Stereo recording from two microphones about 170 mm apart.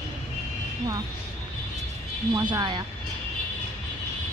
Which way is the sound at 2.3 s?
25° right (ahead or behind).